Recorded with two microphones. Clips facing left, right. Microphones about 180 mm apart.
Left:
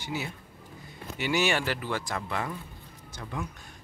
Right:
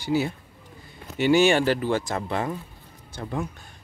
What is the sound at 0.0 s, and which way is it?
Speech, 35° right (ahead or behind).